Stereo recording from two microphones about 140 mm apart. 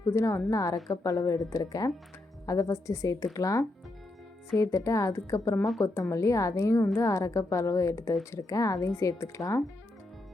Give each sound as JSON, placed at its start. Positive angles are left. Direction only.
{"t": 0.0, "sound": "a woman's voice", "side_deg": 20}